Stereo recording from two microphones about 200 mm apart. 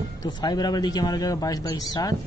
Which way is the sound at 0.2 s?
20° left (ahead or behind).